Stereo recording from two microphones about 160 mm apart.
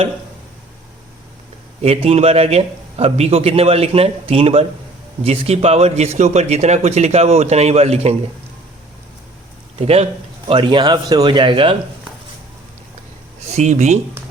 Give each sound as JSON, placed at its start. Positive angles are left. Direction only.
{"t": 1.8, "sound": "a man's voice", "side_deg": -40}
{"t": 9.8, "sound": "a man's voice", "side_deg": -40}
{"t": 10.5, "sound": "speech", "side_deg": -30}
{"t": 13.6, "sound": "speech", "side_deg": -45}